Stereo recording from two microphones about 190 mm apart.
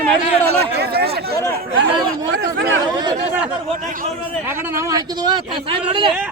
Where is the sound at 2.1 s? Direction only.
70° right (ahead or behind).